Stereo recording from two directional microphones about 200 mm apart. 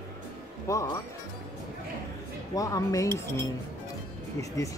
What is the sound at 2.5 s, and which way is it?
Speech, 15° left (ahead or behind).